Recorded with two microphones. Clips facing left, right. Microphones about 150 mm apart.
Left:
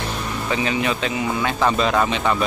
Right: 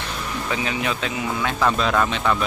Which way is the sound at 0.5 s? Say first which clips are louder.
Left 4 dB; centre (ahead or behind).